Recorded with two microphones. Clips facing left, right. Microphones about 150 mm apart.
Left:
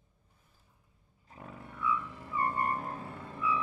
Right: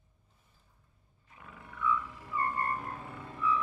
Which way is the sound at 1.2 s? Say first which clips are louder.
Left 5 dB; 35° left (ahead or behind).